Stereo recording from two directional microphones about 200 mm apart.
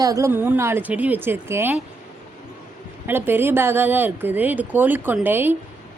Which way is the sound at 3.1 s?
10° right (ahead or behind).